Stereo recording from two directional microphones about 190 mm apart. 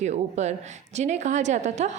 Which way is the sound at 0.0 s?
35° right (ahead or behind).